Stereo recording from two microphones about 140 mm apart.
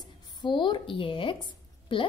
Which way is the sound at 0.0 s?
30° left (ahead or behind).